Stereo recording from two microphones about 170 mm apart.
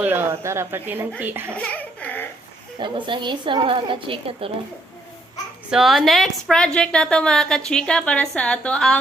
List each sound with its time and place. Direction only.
0.0 s speech: 10° right (ahead or behind)
1.5 s a sound: 10° left (ahead or behind)
2.7 s a woman's voice: 30° right (ahead or behind)
5.7 s a woman's voice: centre (ahead or behind)